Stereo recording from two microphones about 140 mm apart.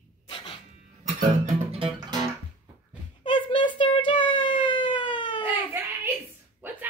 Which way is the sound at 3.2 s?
35° left (ahead or behind).